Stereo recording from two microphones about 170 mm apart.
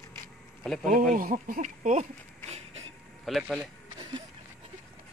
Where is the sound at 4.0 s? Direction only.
30° right (ahead or behind).